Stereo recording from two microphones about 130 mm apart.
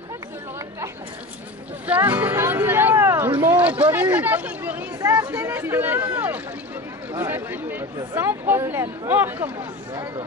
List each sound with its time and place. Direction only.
1.9 s music: 15° right (ahead or behind)
3.4 s speech: 10° right (ahead or behind)
5.0 s speech: 25° right (ahead or behind)
5.3 s speech: 15° right (ahead or behind)